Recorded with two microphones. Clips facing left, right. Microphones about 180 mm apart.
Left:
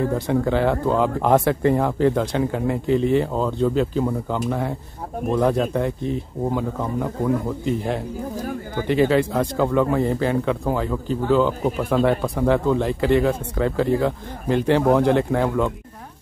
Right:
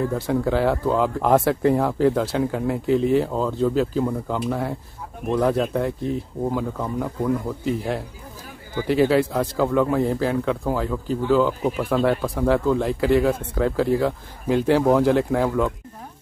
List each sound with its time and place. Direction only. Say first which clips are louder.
0.3 s speech: even; 5° right (ahead or behind)
8.4 s speech: even; 45° left (ahead or behind)
8.8 s speech: even; 5° right (ahead or behind)